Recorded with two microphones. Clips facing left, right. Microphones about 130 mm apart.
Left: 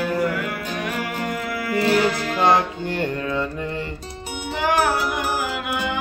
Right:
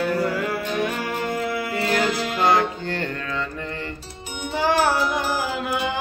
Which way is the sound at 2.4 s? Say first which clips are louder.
Left 1 dB; 20° left (ahead or behind).